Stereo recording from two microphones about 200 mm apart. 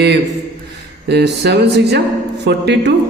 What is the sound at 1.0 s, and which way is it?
A man's voice, 55° right (ahead or behind).